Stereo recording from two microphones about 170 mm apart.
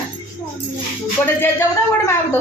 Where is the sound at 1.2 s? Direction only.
15° left (ahead or behind).